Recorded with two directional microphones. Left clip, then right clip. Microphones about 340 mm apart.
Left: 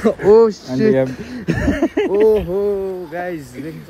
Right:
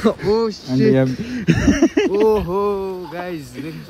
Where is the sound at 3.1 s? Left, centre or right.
Centre.